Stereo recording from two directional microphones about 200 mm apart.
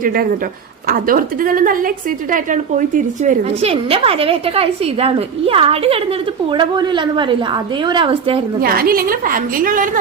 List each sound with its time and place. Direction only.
0.0 s a woman's voice: 45° right (ahead or behind); by 8.4 s 25° right (ahead or behind)
8.6 s a woman's voice: 50° right (ahead or behind)